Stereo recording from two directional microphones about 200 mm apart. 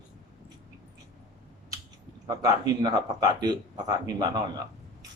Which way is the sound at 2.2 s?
20° right (ahead or behind).